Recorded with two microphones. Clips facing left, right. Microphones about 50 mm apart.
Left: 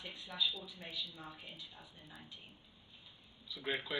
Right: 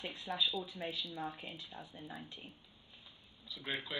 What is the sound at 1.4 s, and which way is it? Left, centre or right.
Speech, right.